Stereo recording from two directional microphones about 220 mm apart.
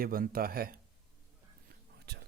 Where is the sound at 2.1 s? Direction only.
45° right (ahead or behind).